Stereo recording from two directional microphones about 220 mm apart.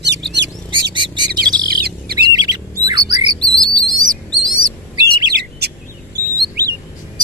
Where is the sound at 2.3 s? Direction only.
20° right (ahead or behind).